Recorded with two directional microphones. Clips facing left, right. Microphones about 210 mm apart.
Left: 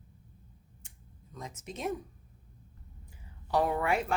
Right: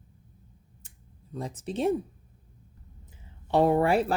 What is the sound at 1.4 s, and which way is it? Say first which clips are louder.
Speech: right 10 dB; 35° right (ahead or behind).